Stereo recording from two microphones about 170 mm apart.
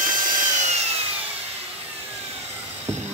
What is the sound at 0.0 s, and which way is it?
Wood, 50° right (ahead or behind).